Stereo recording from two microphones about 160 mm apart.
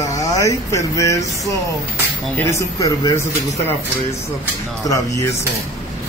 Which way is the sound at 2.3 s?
20° left (ahead or behind).